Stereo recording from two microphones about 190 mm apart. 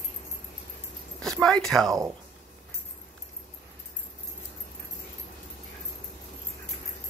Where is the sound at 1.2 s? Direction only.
5° left (ahead or behind).